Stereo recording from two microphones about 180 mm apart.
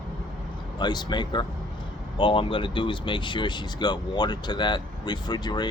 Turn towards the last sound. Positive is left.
turn(degrees=25)  # may be behind; listen again after turning